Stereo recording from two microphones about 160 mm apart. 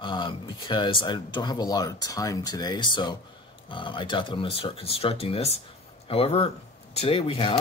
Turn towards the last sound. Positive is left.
turn(degrees=35)  # may be behind; listen again after turning